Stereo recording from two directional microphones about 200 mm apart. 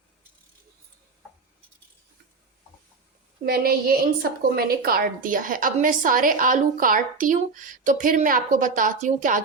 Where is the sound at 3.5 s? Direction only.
50° right (ahead or behind).